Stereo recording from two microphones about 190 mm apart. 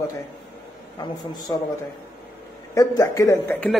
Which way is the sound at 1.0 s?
20° left (ahead or behind).